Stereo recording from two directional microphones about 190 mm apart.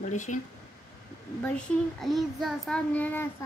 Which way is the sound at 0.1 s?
40° left (ahead or behind).